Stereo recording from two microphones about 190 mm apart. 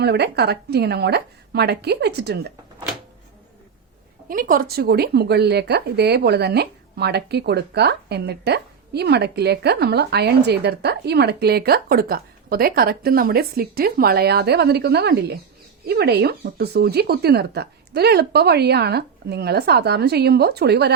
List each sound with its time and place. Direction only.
0.0 s speech: 60° right (ahead or behind)
4.3 s speech: 45° right (ahead or behind)